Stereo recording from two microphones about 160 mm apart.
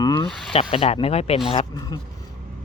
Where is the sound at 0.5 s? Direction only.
35° left (ahead or behind).